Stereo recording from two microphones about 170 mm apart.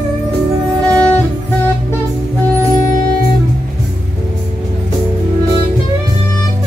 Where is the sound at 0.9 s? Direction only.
5° left (ahead or behind).